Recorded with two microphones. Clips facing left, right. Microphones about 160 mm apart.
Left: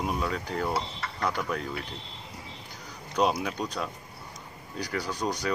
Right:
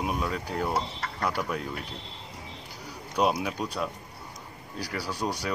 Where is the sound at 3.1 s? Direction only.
5° right (ahead or behind).